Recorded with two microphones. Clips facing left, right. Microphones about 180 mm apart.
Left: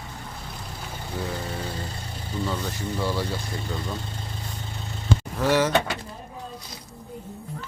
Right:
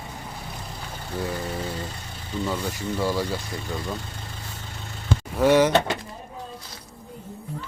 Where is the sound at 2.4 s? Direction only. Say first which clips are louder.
Right 2 dB; 10° right (ahead or behind).